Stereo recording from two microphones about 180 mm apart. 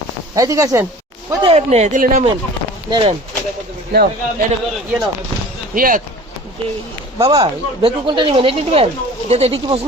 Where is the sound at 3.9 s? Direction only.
65° right (ahead or behind).